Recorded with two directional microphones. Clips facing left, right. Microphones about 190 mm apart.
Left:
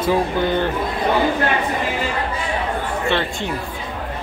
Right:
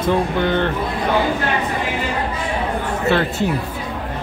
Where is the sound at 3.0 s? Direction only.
5° right (ahead or behind).